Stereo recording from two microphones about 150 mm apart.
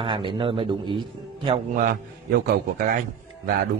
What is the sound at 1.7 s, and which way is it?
A man's voice, 70° right (ahead or behind).